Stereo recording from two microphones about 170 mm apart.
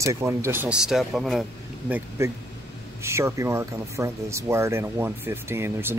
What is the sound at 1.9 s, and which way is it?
Speech, 10° right (ahead or behind).